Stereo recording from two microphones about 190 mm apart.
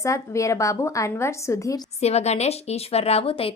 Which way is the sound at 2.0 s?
35° left (ahead or behind).